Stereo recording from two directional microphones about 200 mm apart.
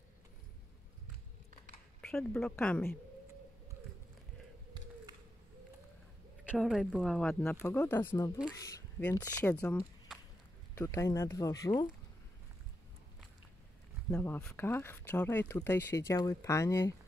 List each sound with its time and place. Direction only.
2.0 s speech: 5° left (ahead or behind)
6.4 s speech: 5° right (ahead or behind); by 11.7 s 15° left (ahead or behind)
14.1 s speech: 10° left (ahead or behind)